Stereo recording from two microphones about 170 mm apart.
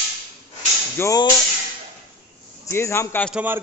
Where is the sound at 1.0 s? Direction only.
20° left (ahead or behind).